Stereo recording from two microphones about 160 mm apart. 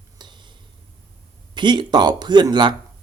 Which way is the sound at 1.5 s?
30° right (ahead or behind).